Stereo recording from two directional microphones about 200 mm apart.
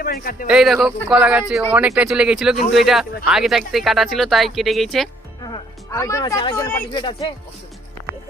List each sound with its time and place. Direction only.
0.0 s a man's voice: 45° left (ahead or behind)
0.4 s speech: 5° right (ahead or behind)
5.4 s speech: 20° left (ahead or behind)